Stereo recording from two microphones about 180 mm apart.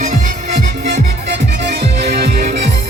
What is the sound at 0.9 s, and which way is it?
Music, 70° right (ahead or behind).